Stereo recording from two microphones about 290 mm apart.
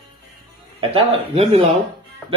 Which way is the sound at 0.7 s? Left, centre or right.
Centre.